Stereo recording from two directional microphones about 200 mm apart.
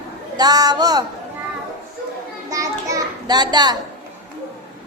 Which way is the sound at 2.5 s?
15° right (ahead or behind).